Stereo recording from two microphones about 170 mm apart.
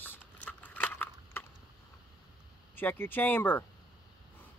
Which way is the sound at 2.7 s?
10° left (ahead or behind).